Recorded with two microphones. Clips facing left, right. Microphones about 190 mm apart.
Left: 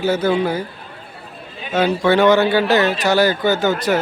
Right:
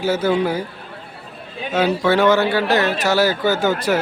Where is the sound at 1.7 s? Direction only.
5° right (ahead or behind).